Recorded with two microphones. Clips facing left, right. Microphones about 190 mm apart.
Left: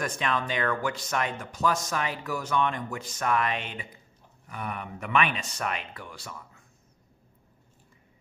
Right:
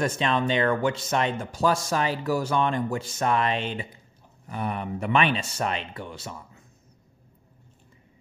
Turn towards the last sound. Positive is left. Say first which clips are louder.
# right 4 dB
turn(degrees=-25)  # may be behind; listen again after turning